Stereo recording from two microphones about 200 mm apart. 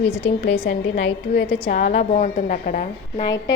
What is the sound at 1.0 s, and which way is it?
Speech, 65° left (ahead or behind).